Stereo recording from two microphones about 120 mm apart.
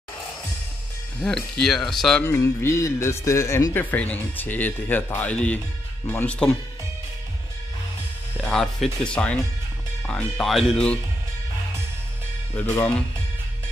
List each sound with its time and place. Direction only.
1.2 s speech: 5° left (ahead or behind)
2.2 s a man's voice: 20° left (ahead or behind)
8.4 s a man's voice: 5° left (ahead or behind)
12.6 s speech: 20° left (ahead or behind)